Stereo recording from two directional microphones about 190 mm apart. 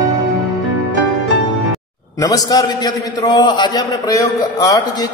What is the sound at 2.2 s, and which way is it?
Speech, 20° left (ahead or behind).